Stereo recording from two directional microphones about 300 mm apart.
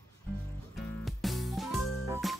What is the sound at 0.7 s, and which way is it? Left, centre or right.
Music, centre.